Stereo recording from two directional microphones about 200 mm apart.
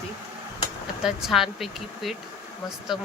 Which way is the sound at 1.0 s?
Centre (ahead or behind).